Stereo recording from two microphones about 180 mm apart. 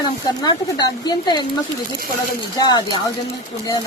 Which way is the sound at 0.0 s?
25° left (ahead or behind).